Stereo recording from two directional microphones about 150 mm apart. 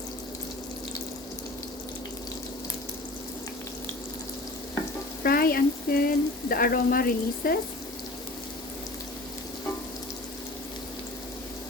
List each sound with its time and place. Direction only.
5.2 s frying: 80° left